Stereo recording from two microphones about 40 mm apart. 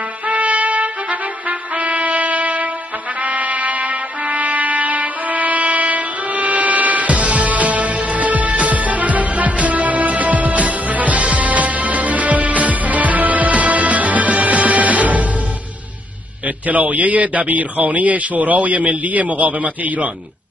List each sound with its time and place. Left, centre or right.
0.3 s music: right
1.5 s brass instrument: right
3.2 s music: right
16.4 s speech: right